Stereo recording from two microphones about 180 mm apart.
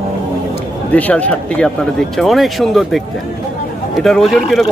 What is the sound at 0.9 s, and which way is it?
Speech, 10° left (ahead or behind).